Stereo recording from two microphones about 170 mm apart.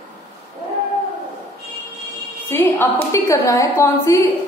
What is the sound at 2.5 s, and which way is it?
A woman's voice, 15° left (ahead or behind).